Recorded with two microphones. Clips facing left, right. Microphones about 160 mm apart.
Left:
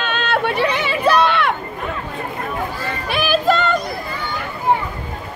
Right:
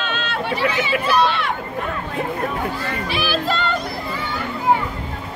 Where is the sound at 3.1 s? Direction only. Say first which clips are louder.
Left 7 dB; 50° left (ahead or behind).